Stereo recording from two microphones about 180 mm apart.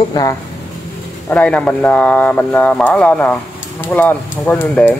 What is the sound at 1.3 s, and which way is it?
Speech, 5° left (ahead or behind).